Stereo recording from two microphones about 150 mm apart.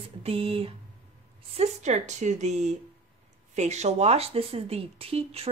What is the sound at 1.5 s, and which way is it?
Speech, 50° right (ahead or behind).